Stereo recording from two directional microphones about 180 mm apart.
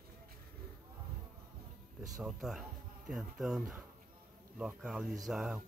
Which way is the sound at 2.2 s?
Centre (ahead or behind).